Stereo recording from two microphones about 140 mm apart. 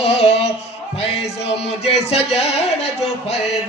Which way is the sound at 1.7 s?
45° left (ahead or behind).